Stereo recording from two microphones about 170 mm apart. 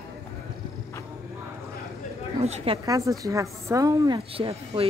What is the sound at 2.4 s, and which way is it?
Speech, 35° right (ahead or behind).